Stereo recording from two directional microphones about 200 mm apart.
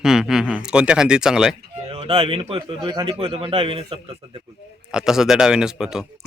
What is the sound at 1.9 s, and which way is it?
Speech, 30° right (ahead or behind).